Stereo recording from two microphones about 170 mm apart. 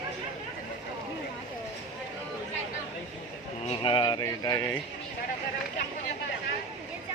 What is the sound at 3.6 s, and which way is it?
Speech, 30° left (ahead or behind).